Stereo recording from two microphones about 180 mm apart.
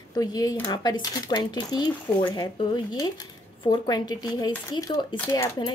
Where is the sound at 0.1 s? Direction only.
20° left (ahead or behind).